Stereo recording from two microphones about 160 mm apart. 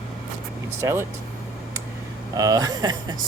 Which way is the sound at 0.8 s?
15° right (ahead or behind).